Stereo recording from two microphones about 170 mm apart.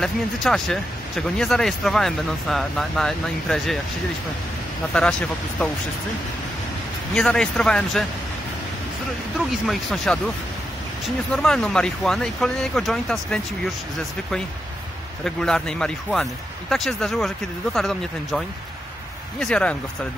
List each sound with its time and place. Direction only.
0.0 s speech: 5° left (ahead or behind)
4.9 s speech: 5° left (ahead or behind)
7.2 s speech: 5° left (ahead or behind)
9.5 s speech: centre (ahead or behind)
11.3 s speech: 5° left (ahead or behind)
15.2 s speech: 5° left (ahead or behind)
19.4 s speech: 5° left (ahead or behind)